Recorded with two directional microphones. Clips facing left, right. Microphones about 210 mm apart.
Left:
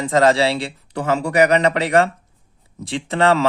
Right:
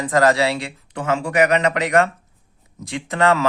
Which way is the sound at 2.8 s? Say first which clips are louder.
Left 1 dB; 30° left (ahead or behind).